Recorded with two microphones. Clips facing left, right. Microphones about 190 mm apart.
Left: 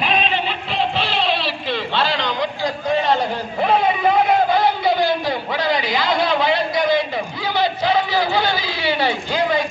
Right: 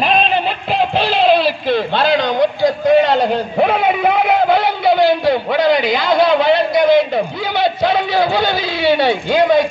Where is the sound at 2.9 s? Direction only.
65° right (ahead or behind).